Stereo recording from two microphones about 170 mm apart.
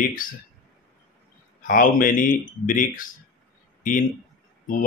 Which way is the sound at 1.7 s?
55° left (ahead or behind).